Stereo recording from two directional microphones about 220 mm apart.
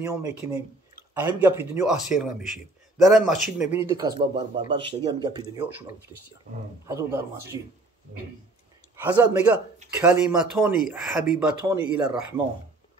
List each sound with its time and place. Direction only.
0.0 s a man's voice: 15° right (ahead or behind)
6.9 s a man's voice: 15° right (ahead or behind)
7.5 s speech: 20° left (ahead or behind)
8.9 s a man's voice: 10° right (ahead or behind)